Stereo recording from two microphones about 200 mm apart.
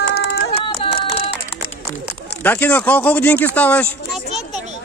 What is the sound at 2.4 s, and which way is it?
Speech, 10° left (ahead or behind).